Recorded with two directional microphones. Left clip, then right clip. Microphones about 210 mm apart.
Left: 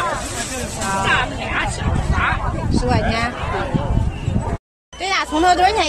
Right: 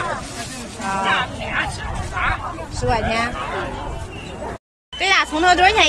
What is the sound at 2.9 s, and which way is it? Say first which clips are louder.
Speech: right 1 dB; 15° right (ahead or behind).